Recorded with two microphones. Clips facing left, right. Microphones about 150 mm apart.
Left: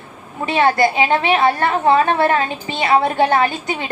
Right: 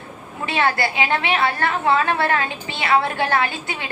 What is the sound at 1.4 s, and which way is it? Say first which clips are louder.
Speech: left 5 dB; 50° left (ahead or behind).